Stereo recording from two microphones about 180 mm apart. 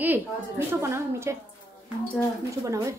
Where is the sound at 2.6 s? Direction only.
15° right (ahead or behind).